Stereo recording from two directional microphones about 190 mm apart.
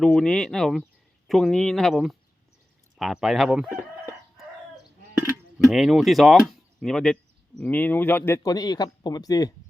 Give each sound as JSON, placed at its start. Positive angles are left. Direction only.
{"t": 0.0, "sound": "speech", "side_deg": 5}
{"t": 5.5, "sound": "speech", "side_deg": 0}